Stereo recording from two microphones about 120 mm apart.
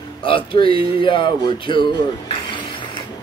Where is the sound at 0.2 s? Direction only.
45° left (ahead or behind).